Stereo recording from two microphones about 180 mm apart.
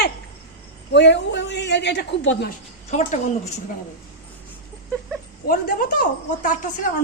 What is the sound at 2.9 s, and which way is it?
Speech, 40° left (ahead or behind).